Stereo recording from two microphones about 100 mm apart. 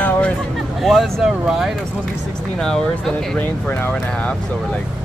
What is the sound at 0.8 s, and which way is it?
Speech, centre (ahead or behind).